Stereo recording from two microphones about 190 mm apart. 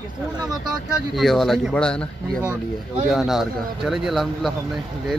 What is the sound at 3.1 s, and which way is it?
Speech, centre (ahead or behind).